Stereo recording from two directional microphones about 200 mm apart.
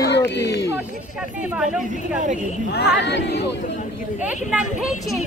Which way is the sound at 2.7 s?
55° left (ahead or behind).